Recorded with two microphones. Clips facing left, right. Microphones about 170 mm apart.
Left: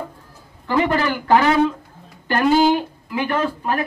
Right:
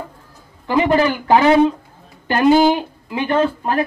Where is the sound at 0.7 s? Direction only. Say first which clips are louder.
Right 4 dB; 20° right (ahead or behind).